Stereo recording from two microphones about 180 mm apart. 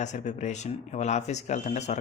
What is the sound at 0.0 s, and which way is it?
Speech, 40° left (ahead or behind).